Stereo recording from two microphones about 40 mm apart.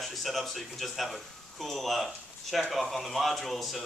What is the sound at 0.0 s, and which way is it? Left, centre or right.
Speech, centre.